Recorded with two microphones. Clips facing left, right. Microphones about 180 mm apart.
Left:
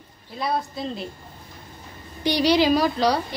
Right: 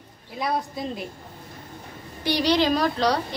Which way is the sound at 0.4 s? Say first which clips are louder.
Left 1 dB; 15° right (ahead or behind).